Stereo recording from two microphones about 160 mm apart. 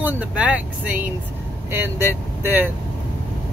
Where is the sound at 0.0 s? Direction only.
10° right (ahead or behind).